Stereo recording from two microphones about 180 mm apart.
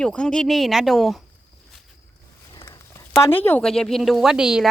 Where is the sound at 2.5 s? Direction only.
20° left (ahead or behind).